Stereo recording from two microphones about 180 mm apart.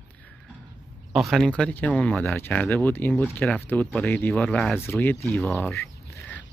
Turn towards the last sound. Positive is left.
turn(degrees=10)  # may be behind; listen again after turning